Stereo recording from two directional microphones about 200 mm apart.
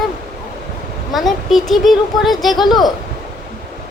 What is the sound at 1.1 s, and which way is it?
Speech, centre (ahead or behind).